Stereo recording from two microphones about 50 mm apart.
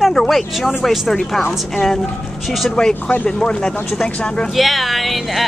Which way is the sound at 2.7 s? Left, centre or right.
Centre.